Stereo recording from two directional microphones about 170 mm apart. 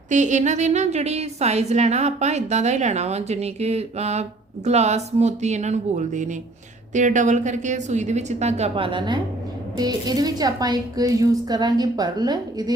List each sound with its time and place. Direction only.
0.1 s a woman's voice: 45° right (ahead or behind); by 12.7 s 25° right (ahead or behind)